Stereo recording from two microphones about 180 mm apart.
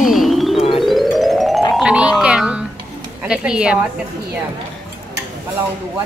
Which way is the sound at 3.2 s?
5° right (ahead or behind).